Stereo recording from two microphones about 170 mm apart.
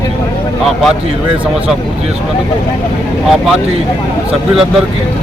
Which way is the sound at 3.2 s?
Centre (ahead or behind).